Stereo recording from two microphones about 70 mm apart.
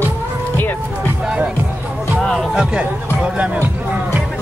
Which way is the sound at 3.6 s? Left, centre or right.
Right.